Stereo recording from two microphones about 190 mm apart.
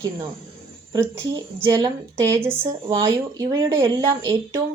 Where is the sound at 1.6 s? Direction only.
15° right (ahead or behind).